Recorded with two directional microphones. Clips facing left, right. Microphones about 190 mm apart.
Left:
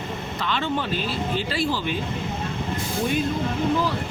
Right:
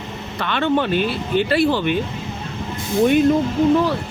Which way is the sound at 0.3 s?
60° right (ahead or behind).